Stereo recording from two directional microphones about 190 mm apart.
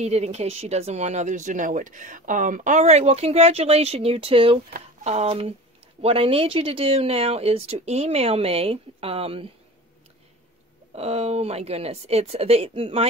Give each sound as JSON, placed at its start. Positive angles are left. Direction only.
{"t": 0.0, "sound": "speech", "side_deg": -35}
{"t": 11.0, "sound": "speech", "side_deg": -35}